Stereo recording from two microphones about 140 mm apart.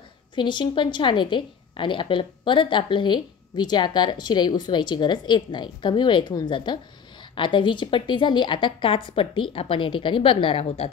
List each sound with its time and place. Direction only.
0.4 s a woman's voice: 35° left (ahead or behind)